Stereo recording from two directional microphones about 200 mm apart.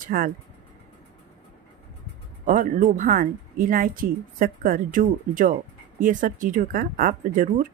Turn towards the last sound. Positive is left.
turn(degrees=-40)  # may be behind; listen again after turning